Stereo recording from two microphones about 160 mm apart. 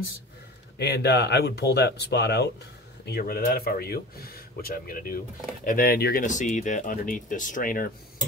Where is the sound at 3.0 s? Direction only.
75° left (ahead or behind).